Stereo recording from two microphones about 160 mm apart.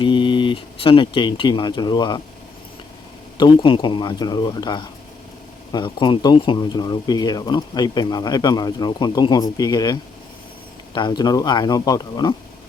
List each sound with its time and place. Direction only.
0.0 s speech: 30° left (ahead or behind)
3.3 s speech: 30° left (ahead or behind)